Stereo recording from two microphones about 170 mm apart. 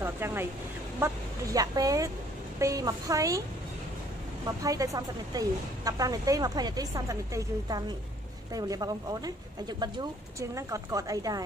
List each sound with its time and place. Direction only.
0.0 s speech: 15° right (ahead or behind)
4.6 s speech: 20° right (ahead or behind)